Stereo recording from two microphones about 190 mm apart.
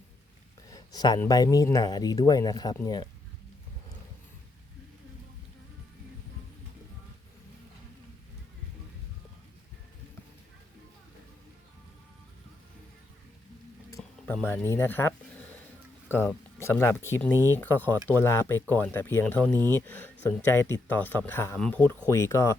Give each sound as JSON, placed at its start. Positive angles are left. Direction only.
{"t": 0.7, "sound": "a sound", "side_deg": 20}
{"t": 1.2, "sound": "speech", "side_deg": 20}
{"t": 14.0, "sound": "music", "side_deg": 0}
{"t": 14.3, "sound": "speech", "side_deg": 10}
{"t": 16.6, "sound": "speech", "side_deg": 15}
{"t": 17.3, "sound": "speech", "side_deg": -15}
{"t": 17.6, "sound": "speech", "side_deg": 10}
{"t": 19.5, "sound": "speech", "side_deg": -20}
{"t": 20.5, "sound": "speech", "side_deg": 15}